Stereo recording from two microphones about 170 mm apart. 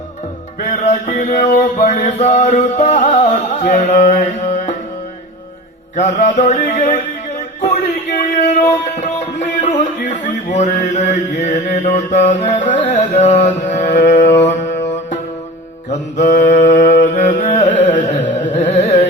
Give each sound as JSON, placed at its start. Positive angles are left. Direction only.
{"t": 0.6, "sound": "music", "side_deg": 50}
{"t": 6.0, "sound": "music", "side_deg": 45}
{"t": 8.1, "sound": "a sound", "side_deg": 50}
{"t": 9.0, "sound": "music", "side_deg": 45}
{"t": 18.3, "sound": "carnatic music", "side_deg": 45}